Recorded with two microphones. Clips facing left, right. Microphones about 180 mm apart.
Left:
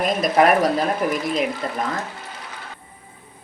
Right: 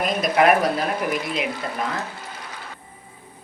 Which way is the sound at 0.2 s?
40° left (ahead or behind).